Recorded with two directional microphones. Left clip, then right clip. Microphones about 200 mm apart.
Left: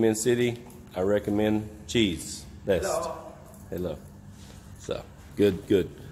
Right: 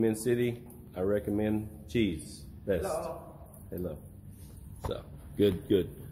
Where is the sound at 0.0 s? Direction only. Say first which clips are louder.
Left 5 dB; 15° left (ahead or behind).